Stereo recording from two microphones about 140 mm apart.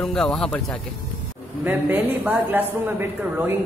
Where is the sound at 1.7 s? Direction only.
10° right (ahead or behind).